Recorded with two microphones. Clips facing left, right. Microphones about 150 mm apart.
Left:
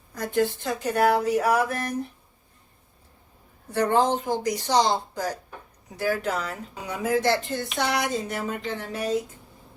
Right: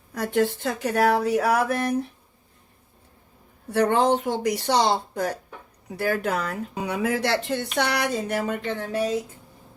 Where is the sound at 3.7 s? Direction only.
60° right (ahead or behind).